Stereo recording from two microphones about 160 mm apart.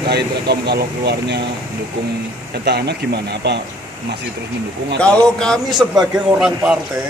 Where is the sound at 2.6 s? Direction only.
90° right.